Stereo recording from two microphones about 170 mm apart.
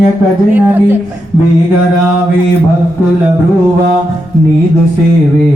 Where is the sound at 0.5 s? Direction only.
10° right (ahead or behind).